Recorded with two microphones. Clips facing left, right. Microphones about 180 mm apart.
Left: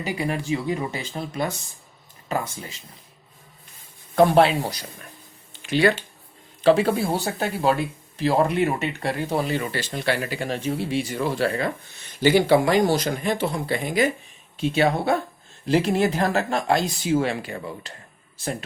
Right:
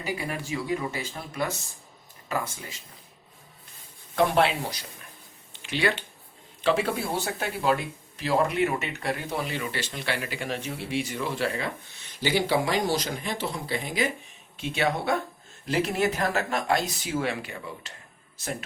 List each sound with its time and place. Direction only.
0.0 s speech: 25° left (ahead or behind)
4.1 s speech: 40° left (ahead or behind)
5.6 s speech: 45° left (ahead or behind)
11.4 s speech: 50° left (ahead or behind)
14.5 s speech: 35° left (ahead or behind)